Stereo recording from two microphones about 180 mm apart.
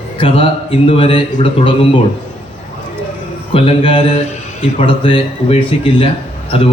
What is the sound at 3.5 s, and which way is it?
A man's voice, 30° left (ahead or behind).